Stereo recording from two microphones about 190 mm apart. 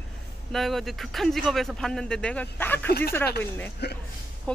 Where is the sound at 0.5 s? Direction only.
Centre (ahead or behind).